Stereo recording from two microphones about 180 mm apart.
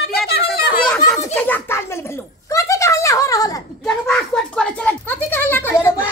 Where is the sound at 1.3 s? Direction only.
10° left (ahead or behind).